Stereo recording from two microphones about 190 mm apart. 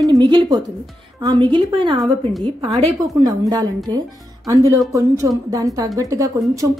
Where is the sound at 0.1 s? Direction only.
25° right (ahead or behind).